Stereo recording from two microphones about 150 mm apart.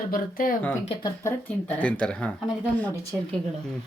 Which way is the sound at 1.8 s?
10° left (ahead or behind).